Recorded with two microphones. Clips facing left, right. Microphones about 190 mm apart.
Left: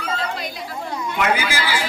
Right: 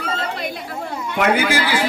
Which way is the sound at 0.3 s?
55° right (ahead or behind).